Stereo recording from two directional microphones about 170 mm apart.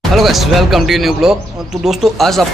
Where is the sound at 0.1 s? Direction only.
Centre (ahead or behind).